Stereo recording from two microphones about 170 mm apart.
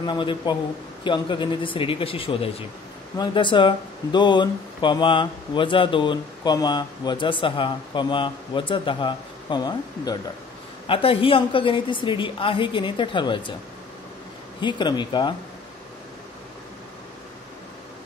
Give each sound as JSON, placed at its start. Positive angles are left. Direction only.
{"t": 0.0, "sound": "speech", "side_deg": 30}
{"t": 14.6, "sound": "speech", "side_deg": 25}